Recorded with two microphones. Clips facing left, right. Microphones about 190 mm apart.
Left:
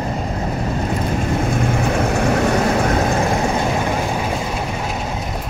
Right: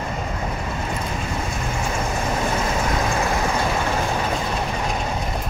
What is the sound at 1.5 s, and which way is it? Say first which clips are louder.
Vehicle: left 8 dB; 55° left (ahead or behind).